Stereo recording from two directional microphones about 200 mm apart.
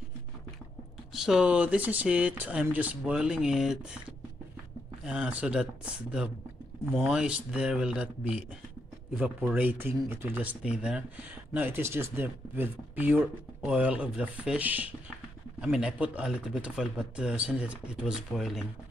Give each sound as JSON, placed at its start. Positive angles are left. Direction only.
{"t": 1.1, "sound": "speech", "side_deg": 0}
{"t": 5.0, "sound": "speech", "side_deg": -5}
{"t": 6.9, "sound": "speech", "side_deg": 0}